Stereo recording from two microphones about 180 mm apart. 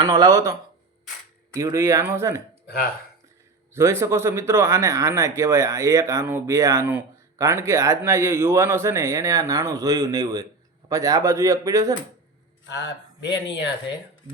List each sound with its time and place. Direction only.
0.0 s speech: 20° right (ahead or behind)
1.5 s speech: 15° right (ahead or behind)
2.6 s speech: 55° left (ahead or behind)
3.8 s speech: 15° right (ahead or behind)
12.6 s speech: 80° left